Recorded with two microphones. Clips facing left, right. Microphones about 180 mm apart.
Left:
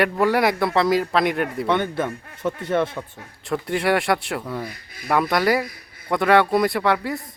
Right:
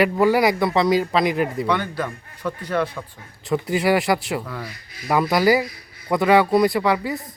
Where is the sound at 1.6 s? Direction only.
25° left (ahead or behind).